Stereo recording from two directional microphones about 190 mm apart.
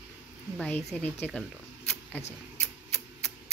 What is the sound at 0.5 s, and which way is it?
Speech, 10° left (ahead or behind).